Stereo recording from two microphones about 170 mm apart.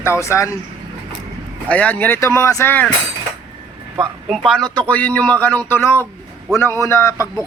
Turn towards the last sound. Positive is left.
turn(degrees=20)  # may be behind; listen again after turning